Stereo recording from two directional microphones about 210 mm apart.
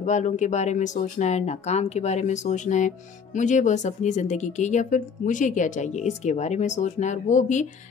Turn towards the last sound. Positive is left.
turn(degrees=35)  # may be behind; listen again after turning